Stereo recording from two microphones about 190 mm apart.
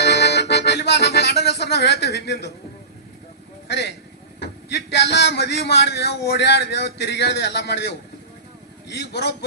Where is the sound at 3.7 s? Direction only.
60° left (ahead or behind).